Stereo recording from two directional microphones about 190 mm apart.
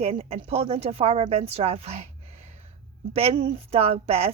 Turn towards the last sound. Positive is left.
turn(degrees=-30)  # may be behind; listen again after turning